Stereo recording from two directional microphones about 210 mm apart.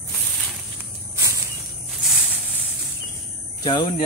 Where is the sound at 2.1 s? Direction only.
Centre (ahead or behind).